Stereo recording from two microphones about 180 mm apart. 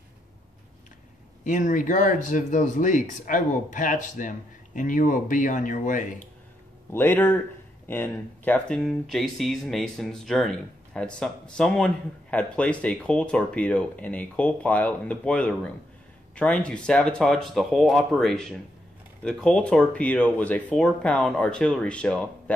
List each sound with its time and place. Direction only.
1.4 s speech: 45° left (ahead or behind)
6.9 s speech: 10° left (ahead or behind)